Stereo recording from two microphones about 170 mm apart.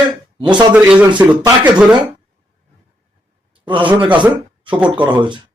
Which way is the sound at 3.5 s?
30° right (ahead or behind).